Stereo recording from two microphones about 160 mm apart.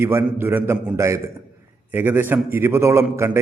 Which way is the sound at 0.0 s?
15° right (ahead or behind).